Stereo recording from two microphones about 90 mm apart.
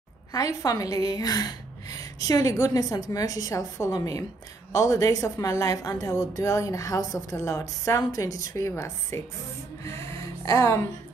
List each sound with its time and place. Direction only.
0.3 s a woman's voice: 40° left (ahead or behind)